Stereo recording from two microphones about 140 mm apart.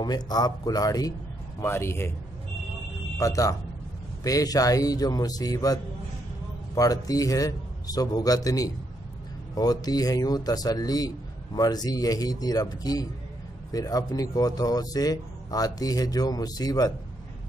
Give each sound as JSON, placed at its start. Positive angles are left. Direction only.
{"t": 0.0, "sound": "a man's voice", "side_deg": 30}
{"t": 3.2, "sound": "a man's voice", "side_deg": 25}